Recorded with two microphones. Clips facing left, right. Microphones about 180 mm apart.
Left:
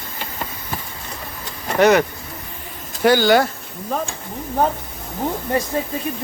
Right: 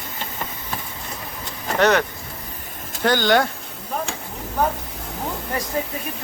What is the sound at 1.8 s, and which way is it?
Speech, 10° left (ahead or behind).